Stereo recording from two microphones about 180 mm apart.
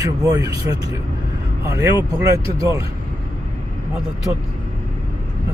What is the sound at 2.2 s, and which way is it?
Speech, 15° right (ahead or behind).